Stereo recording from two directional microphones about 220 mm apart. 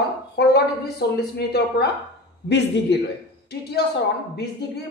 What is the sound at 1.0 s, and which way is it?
Speech, 50° left (ahead or behind).